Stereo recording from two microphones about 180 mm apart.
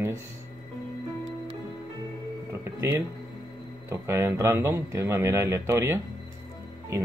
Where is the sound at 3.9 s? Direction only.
15° right (ahead or behind).